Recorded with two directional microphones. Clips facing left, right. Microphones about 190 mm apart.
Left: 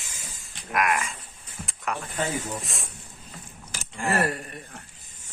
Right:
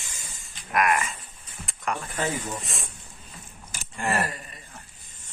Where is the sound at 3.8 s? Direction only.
Centre (ahead or behind).